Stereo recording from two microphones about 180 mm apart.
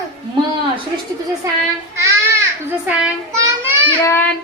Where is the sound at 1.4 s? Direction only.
15° right (ahead or behind).